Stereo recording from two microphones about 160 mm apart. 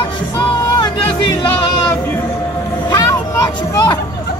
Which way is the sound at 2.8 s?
20° left (ahead or behind).